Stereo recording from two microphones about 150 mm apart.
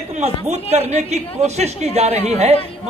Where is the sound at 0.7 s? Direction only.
45° right (ahead or behind).